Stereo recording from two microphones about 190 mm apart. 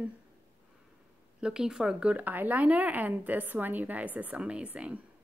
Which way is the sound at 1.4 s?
5° right (ahead or behind).